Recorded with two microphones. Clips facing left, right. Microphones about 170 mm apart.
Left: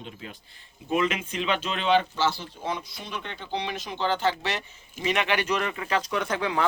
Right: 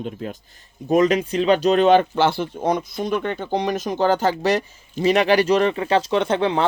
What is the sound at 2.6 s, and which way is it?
Speech, 45° right (ahead or behind).